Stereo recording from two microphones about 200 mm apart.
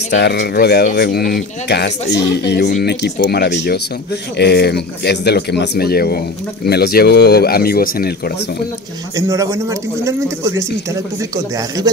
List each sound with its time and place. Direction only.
0.1 s speech: 60° left (ahead or behind)
9.1 s a man's voice: 15° right (ahead or behind)